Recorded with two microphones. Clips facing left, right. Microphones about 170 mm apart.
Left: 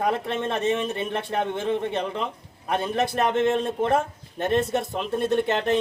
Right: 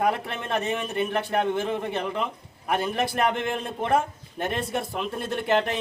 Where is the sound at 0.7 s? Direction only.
25° left (ahead or behind).